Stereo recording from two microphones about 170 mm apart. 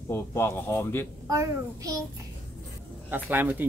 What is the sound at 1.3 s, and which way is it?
Speech, 20° right (ahead or behind).